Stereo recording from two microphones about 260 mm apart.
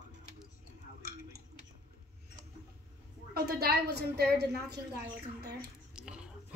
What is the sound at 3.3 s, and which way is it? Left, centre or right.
A woman's voice, right.